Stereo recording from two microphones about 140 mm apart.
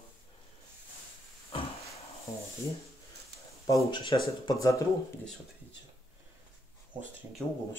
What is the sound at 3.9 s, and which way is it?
Speech, 35° left (ahead or behind).